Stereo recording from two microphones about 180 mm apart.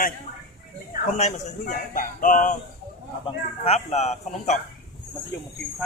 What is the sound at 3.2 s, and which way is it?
Speech, 35° left (ahead or behind).